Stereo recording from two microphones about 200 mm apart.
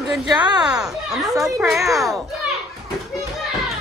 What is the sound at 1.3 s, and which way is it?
Speech, 15° right (ahead or behind).